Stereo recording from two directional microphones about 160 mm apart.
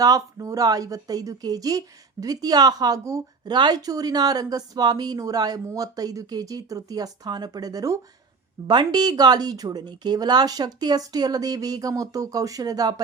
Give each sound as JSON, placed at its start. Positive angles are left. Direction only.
{"t": 0.0, "sound": "speech", "side_deg": -20}